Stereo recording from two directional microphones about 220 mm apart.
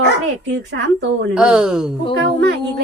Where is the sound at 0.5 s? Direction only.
55° right (ahead or behind).